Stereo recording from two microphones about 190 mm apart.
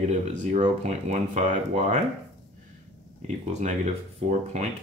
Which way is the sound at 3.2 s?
35° right (ahead or behind).